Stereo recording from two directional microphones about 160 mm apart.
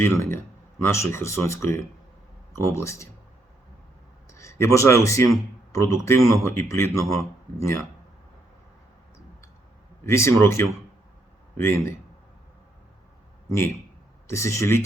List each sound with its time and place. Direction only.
0.0 s speech: 15° left (ahead or behind)
4.4 s a man's voice: 15° left (ahead or behind)
10.1 s speech: 15° left (ahead or behind)
14.3 s speech: 15° left (ahead or behind)